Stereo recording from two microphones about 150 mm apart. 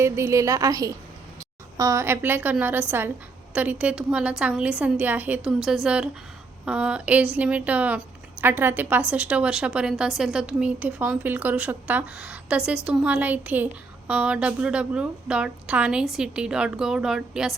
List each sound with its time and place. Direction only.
0.0 s a woman's voice: 20° right (ahead or behind); by 17.5 s 5° right (ahead or behind)